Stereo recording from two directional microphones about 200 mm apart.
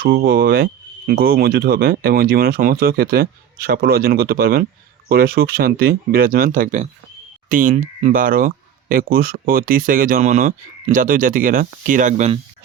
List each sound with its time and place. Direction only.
0.0 s speech: 50° right (ahead or behind); by 12.4 s 35° right (ahead or behind)